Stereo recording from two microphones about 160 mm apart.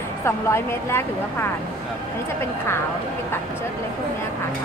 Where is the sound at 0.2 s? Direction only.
15° left (ahead or behind).